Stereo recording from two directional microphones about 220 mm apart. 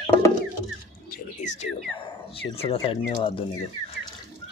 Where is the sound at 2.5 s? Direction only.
25° left (ahead or behind).